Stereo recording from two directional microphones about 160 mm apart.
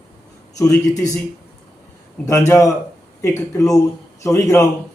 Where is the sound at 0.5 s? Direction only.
20° left (ahead or behind).